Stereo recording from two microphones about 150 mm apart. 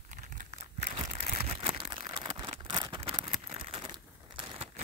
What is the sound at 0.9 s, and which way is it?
Crumpling, 40° right (ahead or behind).